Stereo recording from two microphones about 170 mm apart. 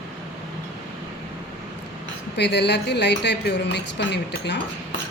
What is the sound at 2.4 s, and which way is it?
A woman's voice, 90° left.